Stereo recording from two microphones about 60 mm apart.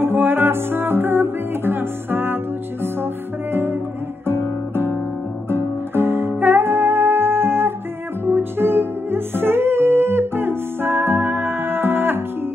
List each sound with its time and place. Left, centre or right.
0.0 s music: right
5.9 s music: right